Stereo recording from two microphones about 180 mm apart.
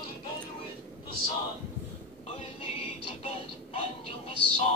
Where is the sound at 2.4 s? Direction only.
35° left (ahead or behind).